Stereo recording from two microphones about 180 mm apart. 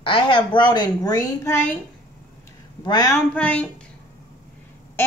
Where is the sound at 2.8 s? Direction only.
20° left (ahead or behind).